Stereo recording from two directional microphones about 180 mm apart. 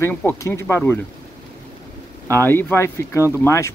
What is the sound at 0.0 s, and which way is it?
Speech, 10° left (ahead or behind).